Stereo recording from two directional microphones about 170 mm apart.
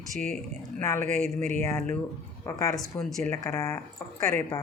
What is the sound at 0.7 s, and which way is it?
Speech, 10° left (ahead or behind).